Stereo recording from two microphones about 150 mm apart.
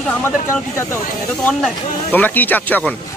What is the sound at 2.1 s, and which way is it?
Speech, 10° left (ahead or behind).